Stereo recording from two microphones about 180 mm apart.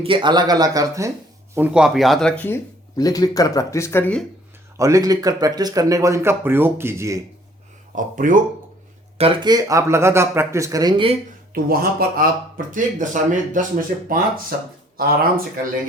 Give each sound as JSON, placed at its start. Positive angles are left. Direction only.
{"t": 0.0, "sound": "speech", "side_deg": -25}
{"t": 1.5, "sound": "speech", "side_deg": -5}
{"t": 4.8, "sound": "speech", "side_deg": -20}
{"t": 7.9, "sound": "speech", "side_deg": -45}
{"t": 9.1, "sound": "speech", "side_deg": -30}
{"t": 11.5, "sound": "speech", "side_deg": -55}